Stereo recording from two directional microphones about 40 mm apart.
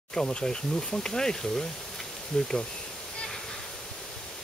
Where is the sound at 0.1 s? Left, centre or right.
Left.